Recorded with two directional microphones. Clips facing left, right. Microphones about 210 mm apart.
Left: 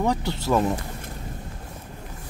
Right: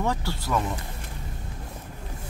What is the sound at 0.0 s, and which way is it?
Speech, 15° left (ahead or behind).